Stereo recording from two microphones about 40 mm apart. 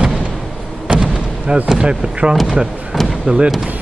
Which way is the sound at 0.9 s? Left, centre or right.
Right.